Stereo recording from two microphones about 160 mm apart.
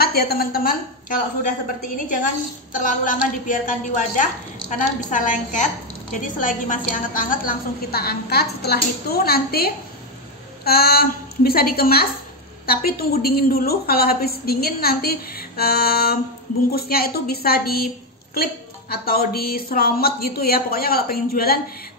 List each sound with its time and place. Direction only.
0.0 s a woman's voice: 75° left (ahead or behind); by 1.5 s 60° left (ahead or behind)
2.7 s a woman's voice: 55° left (ahead or behind)